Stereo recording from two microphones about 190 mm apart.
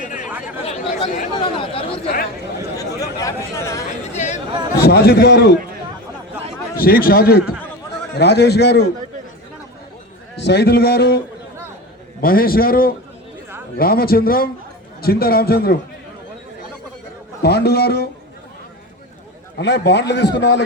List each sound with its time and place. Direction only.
0.6 s chatter: 35° left (ahead or behind)
1.4 s speech: 25° left (ahead or behind)
2.7 s a sound: 20° left (ahead or behind)
3.5 s speech: 15° left (ahead or behind)
4.1 s chatter: 40° left (ahead or behind)
4.8 s a man's voice: 55° left (ahead or behind)
6.7 s a man's voice: 50° left (ahead or behind)
10.4 s a man's voice: 60° left (ahead or behind)
12.2 s a man's voice: 50° left (ahead or behind)
17.4 s a man's voice: 60° left (ahead or behind)
19.5 s a man's voice: 65° left (ahead or behind)